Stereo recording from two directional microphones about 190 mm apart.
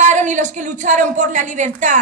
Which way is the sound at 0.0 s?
40° right (ahead or behind).